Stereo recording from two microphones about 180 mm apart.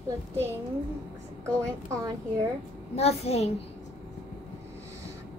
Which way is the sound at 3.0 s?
35° left (ahead or behind).